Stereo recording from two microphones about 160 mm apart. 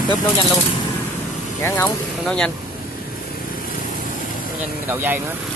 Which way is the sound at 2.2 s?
5° left (ahead or behind).